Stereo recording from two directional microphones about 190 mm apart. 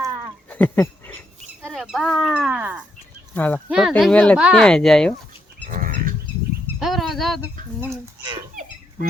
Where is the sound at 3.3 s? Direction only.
10° left (ahead or behind).